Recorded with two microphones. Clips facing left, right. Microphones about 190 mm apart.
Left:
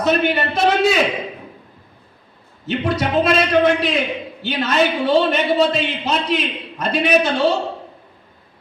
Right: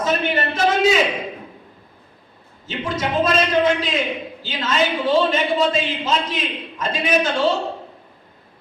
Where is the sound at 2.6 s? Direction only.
65° left (ahead or behind).